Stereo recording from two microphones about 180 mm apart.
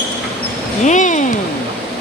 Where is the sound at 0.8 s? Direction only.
45° left (ahead or behind).